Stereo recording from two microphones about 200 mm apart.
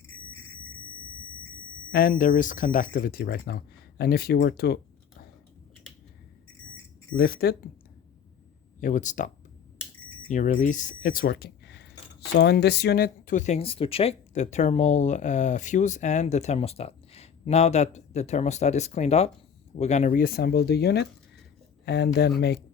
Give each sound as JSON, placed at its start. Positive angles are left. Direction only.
{"t": 1.9, "sound": "speech", "side_deg": 45}
{"t": 7.2, "sound": "speech", "side_deg": 50}
{"t": 8.8, "sound": "speech", "side_deg": 40}